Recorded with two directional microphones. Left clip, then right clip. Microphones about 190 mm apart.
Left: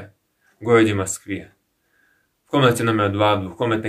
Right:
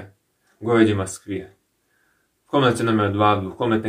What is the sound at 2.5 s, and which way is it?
Speech, 15° left (ahead or behind).